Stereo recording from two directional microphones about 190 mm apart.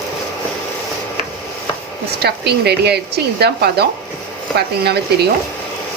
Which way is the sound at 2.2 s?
60° right (ahead or behind).